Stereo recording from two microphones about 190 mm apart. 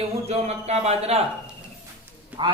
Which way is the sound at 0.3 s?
35° right (ahead or behind).